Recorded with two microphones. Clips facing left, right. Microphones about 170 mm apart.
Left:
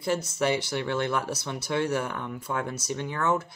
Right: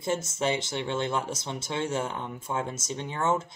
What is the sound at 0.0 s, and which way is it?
Speech, 20° right (ahead or behind).